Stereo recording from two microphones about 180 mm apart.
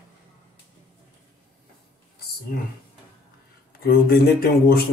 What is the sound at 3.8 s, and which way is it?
Speech, 55° left (ahead or behind).